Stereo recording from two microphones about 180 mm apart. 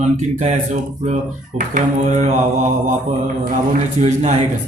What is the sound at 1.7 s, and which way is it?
Mantra, 45° right (ahead or behind).